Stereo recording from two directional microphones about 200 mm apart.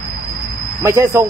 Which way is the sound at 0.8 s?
15° right (ahead or behind).